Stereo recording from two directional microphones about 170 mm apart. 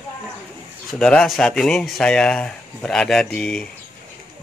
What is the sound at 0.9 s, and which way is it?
Speech, 5° left (ahead or behind).